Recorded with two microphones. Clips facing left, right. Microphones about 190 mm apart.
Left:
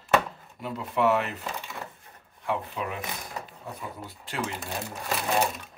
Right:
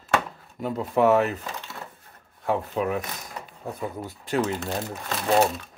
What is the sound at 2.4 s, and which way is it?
Speech, 40° right (ahead or behind).